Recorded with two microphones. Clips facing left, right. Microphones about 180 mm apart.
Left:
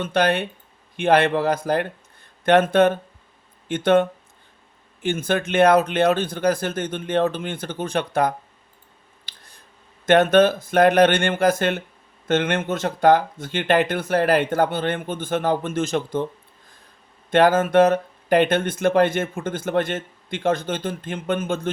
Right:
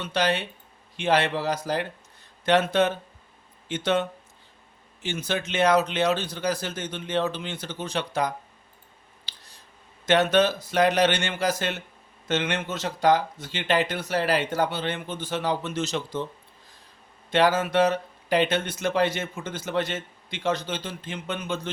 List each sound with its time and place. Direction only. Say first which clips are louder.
0.0 s speech: left 5 dB; 55° left (ahead or behind)
9.2 s finger snapping: left 1 dB; 55° left (ahead or behind)
10.1 s speech: left 6 dB; 50° left (ahead or behind)
17.3 s speech: left 6 dB; 55° left (ahead or behind)